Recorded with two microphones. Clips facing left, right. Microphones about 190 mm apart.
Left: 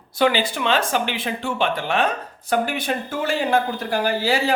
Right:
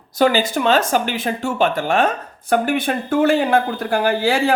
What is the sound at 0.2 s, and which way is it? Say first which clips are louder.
Speech: right 4 dB; 45° right (ahead or behind).